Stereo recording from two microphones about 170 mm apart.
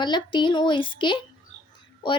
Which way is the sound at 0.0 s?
25° left (ahead or behind).